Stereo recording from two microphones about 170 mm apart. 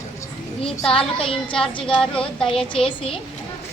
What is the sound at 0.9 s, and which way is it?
Speech, 30° left (ahead or behind).